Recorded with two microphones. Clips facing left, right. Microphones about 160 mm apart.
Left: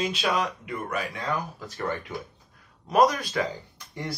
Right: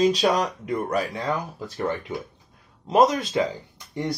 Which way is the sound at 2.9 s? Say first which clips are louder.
Right 3 dB; 25° right (ahead or behind).